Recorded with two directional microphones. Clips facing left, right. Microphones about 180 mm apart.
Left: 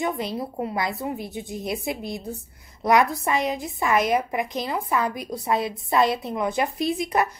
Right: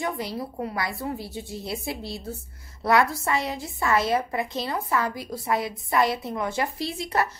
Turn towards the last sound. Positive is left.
turn(degrees=15)  # may be behind; listen again after turning